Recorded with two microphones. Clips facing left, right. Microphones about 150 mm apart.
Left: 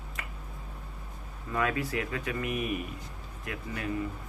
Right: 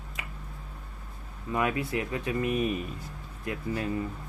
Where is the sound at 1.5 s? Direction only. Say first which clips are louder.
Right 1 dB; 20° right (ahead or behind).